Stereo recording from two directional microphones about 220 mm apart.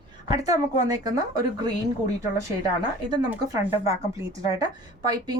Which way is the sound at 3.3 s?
15° right (ahead or behind).